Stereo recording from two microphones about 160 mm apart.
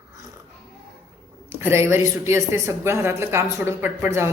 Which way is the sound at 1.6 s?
15° right (ahead or behind).